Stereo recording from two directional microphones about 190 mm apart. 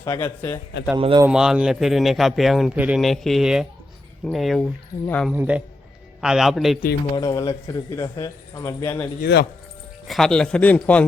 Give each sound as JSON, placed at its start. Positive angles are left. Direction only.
{"t": 0.0, "sound": "speech", "side_deg": 15}
{"t": 0.9, "sound": "speech", "side_deg": -25}
{"t": 1.3, "sound": "speech", "side_deg": -5}
{"t": 5.3, "sound": "a man's voice", "side_deg": -5}
{"t": 7.2, "sound": "speech", "side_deg": 20}
{"t": 9.2, "sound": "speech", "side_deg": 60}
{"t": 10.1, "sound": "speech", "side_deg": 5}